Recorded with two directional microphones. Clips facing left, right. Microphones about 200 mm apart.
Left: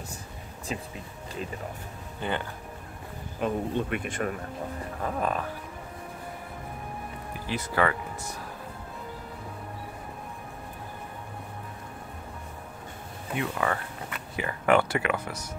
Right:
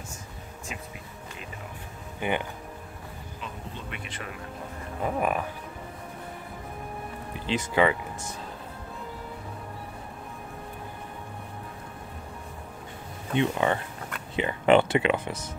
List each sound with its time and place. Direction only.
2.1 s speech: 15° right (ahead or behind)
3.3 s speech: 50° left (ahead or behind)
5.0 s music: 15° right (ahead or behind)
7.4 s speech: 20° right (ahead or behind)
13.3 s speech: 25° right (ahead or behind)